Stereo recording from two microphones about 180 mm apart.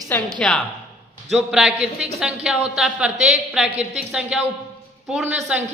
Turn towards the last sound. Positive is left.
turn(degrees=-5)  # may be behind; listen again after turning